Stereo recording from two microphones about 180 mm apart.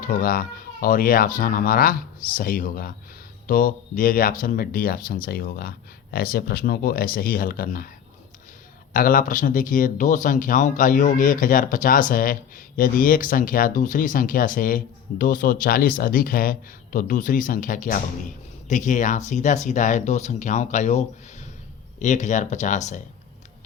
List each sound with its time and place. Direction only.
0.0 s speech: 50° left (ahead or behind)
8.9 s speech: 50° left (ahead or behind)